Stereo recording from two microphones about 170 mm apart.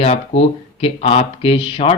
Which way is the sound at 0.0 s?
35° left (ahead or behind).